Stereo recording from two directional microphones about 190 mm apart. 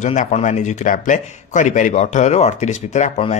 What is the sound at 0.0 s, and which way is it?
Speech, 40° left (ahead or behind).